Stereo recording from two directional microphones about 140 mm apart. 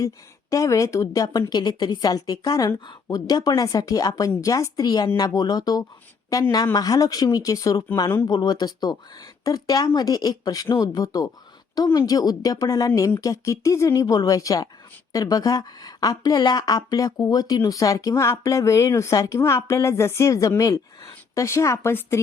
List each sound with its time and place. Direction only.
0.5 s a woman's voice: 25° left (ahead or behind)